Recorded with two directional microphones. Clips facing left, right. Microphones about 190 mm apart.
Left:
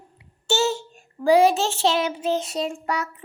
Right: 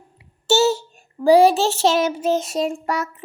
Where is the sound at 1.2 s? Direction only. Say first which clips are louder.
Right 4 dB; 35° right (ahead or behind).